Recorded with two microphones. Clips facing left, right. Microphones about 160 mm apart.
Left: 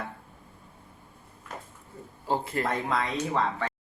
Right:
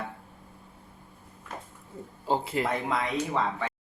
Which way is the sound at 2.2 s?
20° right (ahead or behind).